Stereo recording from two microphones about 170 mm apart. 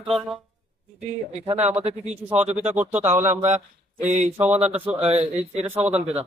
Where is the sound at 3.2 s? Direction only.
45° right (ahead or behind).